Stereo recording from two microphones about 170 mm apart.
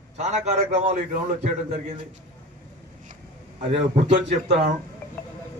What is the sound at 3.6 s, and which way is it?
A man's voice, 35° right (ahead or behind).